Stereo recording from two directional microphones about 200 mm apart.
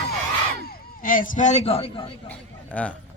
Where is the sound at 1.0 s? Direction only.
45° left (ahead or behind).